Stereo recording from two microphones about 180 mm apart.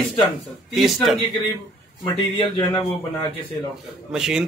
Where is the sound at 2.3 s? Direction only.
25° left (ahead or behind).